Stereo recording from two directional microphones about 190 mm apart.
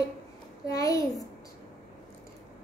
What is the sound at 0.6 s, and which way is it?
Child singing, 20° left (ahead or behind).